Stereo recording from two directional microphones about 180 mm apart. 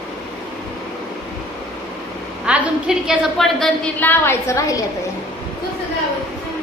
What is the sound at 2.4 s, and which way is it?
A woman's voice, 5° right (ahead or behind).